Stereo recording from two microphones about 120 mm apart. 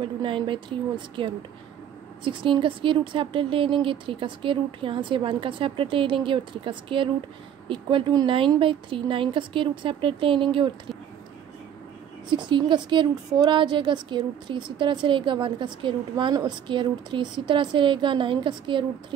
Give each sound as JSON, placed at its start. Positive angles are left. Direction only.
{"t": 0.0, "sound": "a woman's voice", "side_deg": -45}
{"t": 12.3, "sound": "speech", "side_deg": -40}